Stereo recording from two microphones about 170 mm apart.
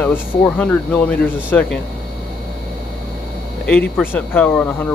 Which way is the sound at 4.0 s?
10° left (ahead or behind).